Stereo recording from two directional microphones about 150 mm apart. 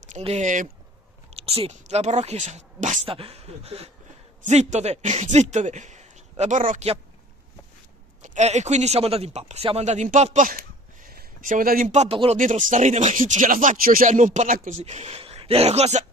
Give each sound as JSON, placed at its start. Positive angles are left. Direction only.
{"t": 0.2, "sound": "a man's voice", "side_deg": -50}
{"t": 1.3, "sound": "speech", "side_deg": -40}
{"t": 3.1, "sound": "a man's voice", "side_deg": -40}
{"t": 8.2, "sound": "speech", "side_deg": -50}
{"t": 11.9, "sound": "a man's voice", "side_deg": -50}
{"t": 12.4, "sound": "speech", "side_deg": -60}
{"t": 14.8, "sound": "speech", "side_deg": -45}